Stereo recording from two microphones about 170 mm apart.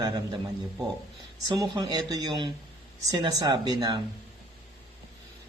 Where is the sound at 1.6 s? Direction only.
25° right (ahead or behind).